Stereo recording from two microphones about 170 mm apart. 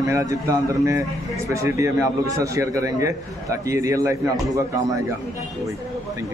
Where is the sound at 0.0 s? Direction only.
20° right (ahead or behind).